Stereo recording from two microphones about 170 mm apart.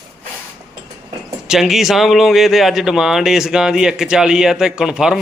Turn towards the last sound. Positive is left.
turn(degrees=-5)  # may be behind; listen again after turning